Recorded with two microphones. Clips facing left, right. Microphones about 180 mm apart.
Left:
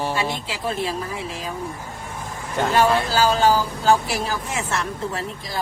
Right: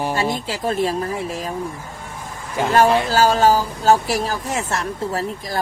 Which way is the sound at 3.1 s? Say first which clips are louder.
Right 3 dB; 45° right (ahead or behind).